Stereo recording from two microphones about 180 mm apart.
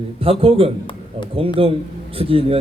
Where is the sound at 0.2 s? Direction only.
30° right (ahead or behind).